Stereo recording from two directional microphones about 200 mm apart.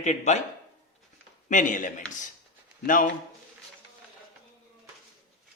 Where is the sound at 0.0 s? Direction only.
35° left (ahead or behind).